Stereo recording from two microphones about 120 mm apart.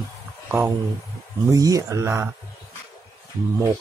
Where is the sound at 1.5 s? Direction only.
30° right (ahead or behind).